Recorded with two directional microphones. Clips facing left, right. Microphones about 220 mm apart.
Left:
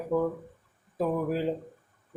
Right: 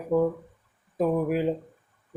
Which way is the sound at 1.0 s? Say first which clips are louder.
Right 4 dB; 15° right (ahead or behind).